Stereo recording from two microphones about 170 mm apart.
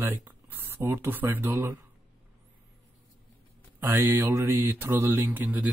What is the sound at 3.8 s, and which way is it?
Speech, 15° right (ahead or behind).